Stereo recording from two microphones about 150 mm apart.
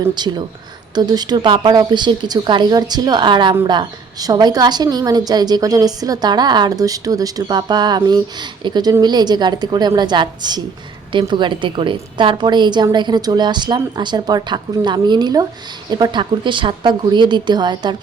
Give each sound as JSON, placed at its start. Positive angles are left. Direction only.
{"t": 0.1, "sound": "a woman's voice", "side_deg": -30}